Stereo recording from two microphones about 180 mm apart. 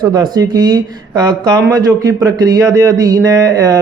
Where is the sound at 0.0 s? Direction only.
20° right (ahead or behind).